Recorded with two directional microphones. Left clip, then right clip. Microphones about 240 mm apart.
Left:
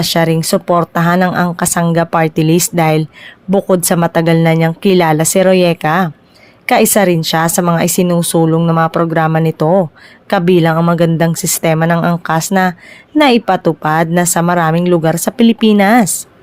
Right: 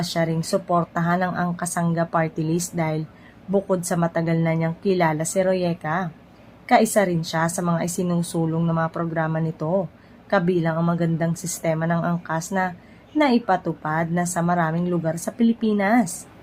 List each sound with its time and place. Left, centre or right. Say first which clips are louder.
0.0 s speech: left 12 dB; left